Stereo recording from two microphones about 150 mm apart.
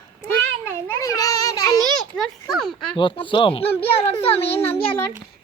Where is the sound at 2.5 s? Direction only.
Centre (ahead or behind).